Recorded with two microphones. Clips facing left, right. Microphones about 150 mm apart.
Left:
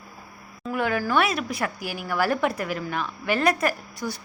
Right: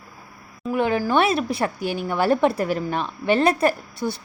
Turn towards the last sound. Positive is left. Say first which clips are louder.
# right 5 dB
turn(degrees=-25)  # may be behind; listen again after turning